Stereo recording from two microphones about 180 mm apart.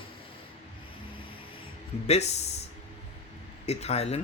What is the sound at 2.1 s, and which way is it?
Speech, 35° left (ahead or behind).